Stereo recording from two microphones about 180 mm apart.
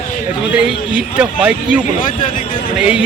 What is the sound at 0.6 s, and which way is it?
Speech, 5° right (ahead or behind).